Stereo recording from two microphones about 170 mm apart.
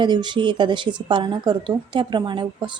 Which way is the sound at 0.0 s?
25° right (ahead or behind).